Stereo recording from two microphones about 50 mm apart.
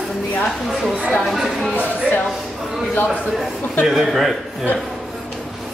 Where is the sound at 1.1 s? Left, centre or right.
Centre.